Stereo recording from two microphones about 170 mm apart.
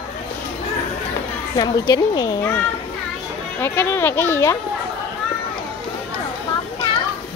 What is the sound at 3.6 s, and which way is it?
Speech, 10° left (ahead or behind).